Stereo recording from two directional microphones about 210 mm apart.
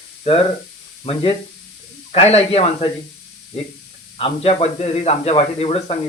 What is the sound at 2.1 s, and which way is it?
Speech, 30° left (ahead or behind).